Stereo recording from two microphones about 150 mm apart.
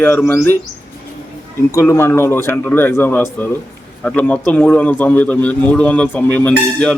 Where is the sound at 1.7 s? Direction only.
20° left (ahead or behind).